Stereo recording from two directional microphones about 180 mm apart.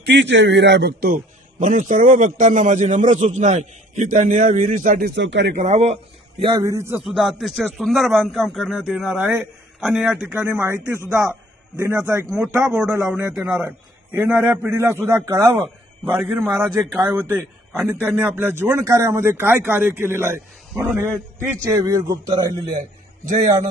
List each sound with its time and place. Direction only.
0.0 s a man's voice: 75° right (ahead or behind)
5.5 s speech: 40° right (ahead or behind)
6.4 s speech: 20° right (ahead or behind)
7.0 s a man's voice: 5° right (ahead or behind)
10.3 s a man's voice: 15° right (ahead or behind)